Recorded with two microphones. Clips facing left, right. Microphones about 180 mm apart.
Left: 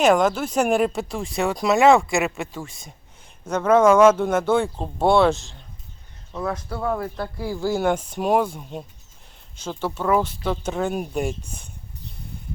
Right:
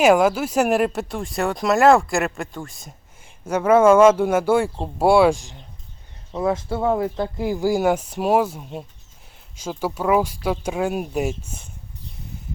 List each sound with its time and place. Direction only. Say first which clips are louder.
0.0 s speech: right 2 dB; 10° right (ahead or behind)
6.3 s speech: right 5 dB; 25° right (ahead or behind); by 11.7 s 5° right (ahead or behind)